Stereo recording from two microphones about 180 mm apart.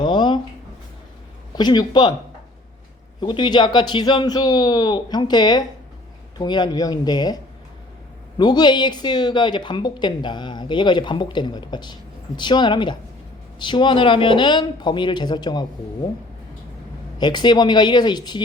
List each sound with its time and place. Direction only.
0.0 s a sound: 25° left (ahead or behind)
1.5 s a woman's voice: 25° left (ahead or behind)
3.2 s a woman's voice: 25° left (ahead or behind)
8.4 s a woman's voice: 25° left (ahead or behind)
17.2 s a woman's voice: 25° left (ahead or behind)